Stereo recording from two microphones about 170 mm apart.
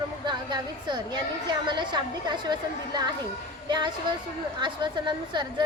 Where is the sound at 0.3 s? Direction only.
25° right (ahead or behind).